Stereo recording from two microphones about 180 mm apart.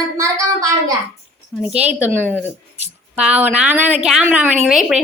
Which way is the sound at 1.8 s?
10° right (ahead or behind).